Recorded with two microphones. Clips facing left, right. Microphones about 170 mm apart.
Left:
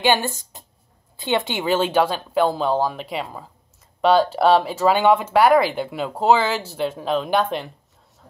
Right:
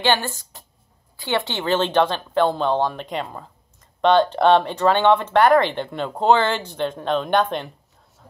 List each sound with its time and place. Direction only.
0.0 s speech: 15° left (ahead or behind)